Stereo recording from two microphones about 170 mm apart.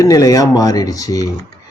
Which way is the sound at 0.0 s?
20° left (ahead or behind).